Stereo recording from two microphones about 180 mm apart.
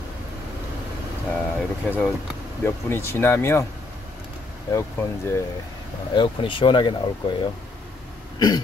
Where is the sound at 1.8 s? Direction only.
10° left (ahead or behind).